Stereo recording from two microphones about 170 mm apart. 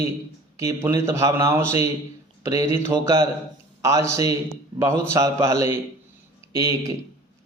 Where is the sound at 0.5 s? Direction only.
15° right (ahead or behind).